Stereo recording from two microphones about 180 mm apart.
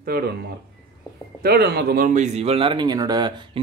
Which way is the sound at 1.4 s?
60° right (ahead or behind).